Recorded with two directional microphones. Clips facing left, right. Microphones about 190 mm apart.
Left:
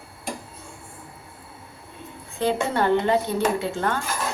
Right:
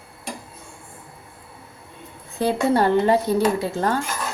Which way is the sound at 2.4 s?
40° right (ahead or behind).